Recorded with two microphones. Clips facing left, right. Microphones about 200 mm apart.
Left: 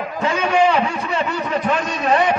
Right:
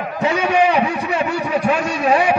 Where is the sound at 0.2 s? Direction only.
15° right (ahead or behind).